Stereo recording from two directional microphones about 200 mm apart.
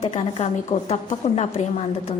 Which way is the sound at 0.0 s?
30° left (ahead or behind).